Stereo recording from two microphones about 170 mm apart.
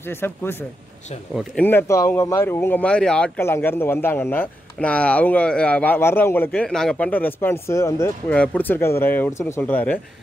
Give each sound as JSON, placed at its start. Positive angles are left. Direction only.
{"t": 0.2, "sound": "speech", "side_deg": 15}
{"t": 1.6, "sound": "speech", "side_deg": 10}